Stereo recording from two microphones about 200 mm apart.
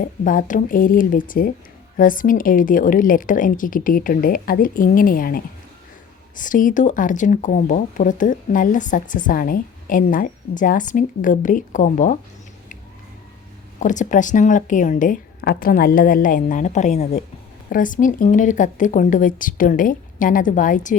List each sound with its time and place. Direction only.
0.0 s a woman's voice: 40° left (ahead or behind)
13.7 s speech: 40° left (ahead or behind)